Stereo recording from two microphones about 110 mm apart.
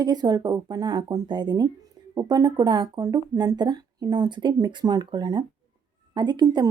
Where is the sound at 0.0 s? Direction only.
40° right (ahead or behind).